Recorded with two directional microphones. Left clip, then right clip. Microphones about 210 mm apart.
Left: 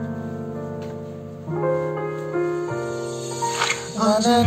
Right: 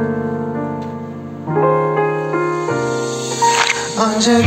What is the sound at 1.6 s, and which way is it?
Music, 50° right (ahead or behind).